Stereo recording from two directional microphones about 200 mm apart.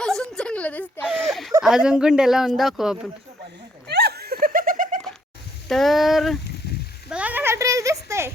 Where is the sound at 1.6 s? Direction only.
5° right (ahead or behind).